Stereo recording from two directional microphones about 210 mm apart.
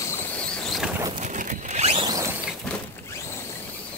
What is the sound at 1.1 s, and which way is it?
Boat, 35° right (ahead or behind).